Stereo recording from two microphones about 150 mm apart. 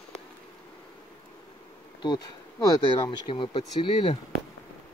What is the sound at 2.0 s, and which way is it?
Speech, 25° left (ahead or behind).